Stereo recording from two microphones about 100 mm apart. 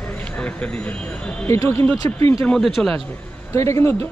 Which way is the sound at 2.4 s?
5° left (ahead or behind).